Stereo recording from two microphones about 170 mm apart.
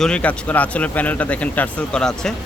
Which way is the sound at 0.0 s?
5° left (ahead or behind).